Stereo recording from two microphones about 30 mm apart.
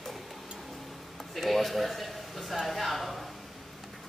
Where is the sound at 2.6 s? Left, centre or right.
Centre.